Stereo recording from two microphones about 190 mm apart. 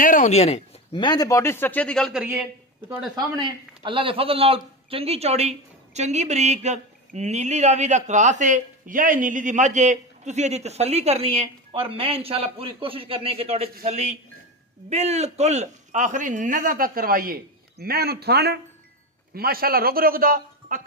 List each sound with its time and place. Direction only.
0.0 s speech: 45° left (ahead or behind); by 3.3 s centre (ahead or behind)
3.3 s a man's voice: 25° right (ahead or behind); by 20.8 s 45° right (ahead or behind)